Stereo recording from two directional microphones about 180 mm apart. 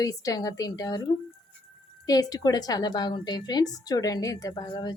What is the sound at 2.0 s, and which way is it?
A woman's voice, 20° left (ahead or behind).